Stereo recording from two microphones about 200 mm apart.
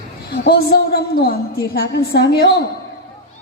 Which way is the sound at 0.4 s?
55° left (ahead or behind).